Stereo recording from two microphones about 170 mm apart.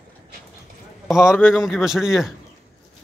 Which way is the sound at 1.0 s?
5° right (ahead or behind).